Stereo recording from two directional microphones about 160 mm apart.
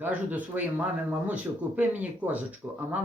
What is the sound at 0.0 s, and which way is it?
Speech, 10° right (ahead or behind).